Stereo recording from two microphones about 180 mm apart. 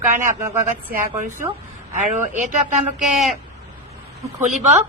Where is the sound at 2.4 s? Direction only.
40° right (ahead or behind).